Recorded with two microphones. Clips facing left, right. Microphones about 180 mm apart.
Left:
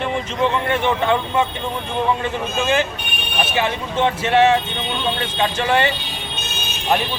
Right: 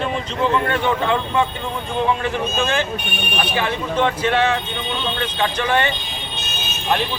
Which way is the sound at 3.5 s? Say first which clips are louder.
Even; 25° left (ahead or behind).